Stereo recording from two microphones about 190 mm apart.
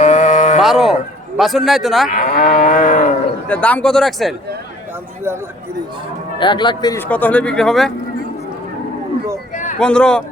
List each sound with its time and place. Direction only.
0.0 s livestock: 40° left (ahead or behind)
0.6 s a sound: centre (ahead or behind)
1.4 s speech: centre (ahead or behind)
2.0 s moo: 40° left (ahead or behind)
3.5 s speech: 5° left (ahead or behind)
6.4 s speech: 25° left (ahead or behind)
7.1 s speech: 10° left (ahead or behind)
9.7 s speech: 5° left (ahead or behind)